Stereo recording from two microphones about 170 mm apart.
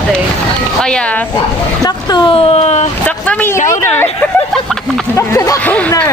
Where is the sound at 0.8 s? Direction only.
5° left (ahead or behind).